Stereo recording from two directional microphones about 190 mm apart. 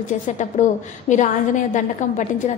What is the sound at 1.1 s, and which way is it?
A woman's voice, 40° left (ahead or behind).